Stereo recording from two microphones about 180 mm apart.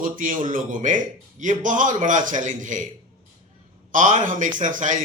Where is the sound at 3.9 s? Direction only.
45° right (ahead or behind).